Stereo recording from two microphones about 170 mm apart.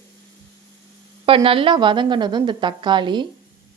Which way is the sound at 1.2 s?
30° right (ahead or behind).